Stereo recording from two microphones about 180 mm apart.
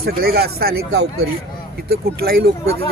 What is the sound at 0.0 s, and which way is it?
Speech, 60° right (ahead or behind).